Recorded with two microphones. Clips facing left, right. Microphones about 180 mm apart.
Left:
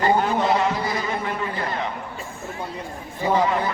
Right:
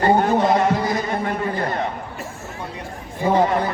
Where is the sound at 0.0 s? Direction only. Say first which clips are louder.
Right 3 dB; 50° right (ahead or behind).